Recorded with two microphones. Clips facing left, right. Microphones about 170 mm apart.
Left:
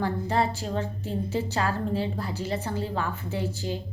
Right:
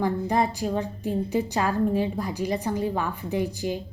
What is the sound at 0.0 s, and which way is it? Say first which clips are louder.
A woman's voice: right 2 dB; 15° right (ahead or behind).